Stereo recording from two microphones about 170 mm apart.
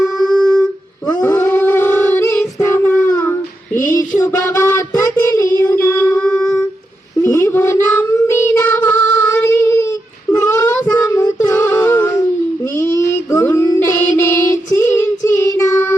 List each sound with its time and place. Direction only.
1.2 s howl: 15° left (ahead or behind)
3.8 s child singing: 15° left (ahead or behind)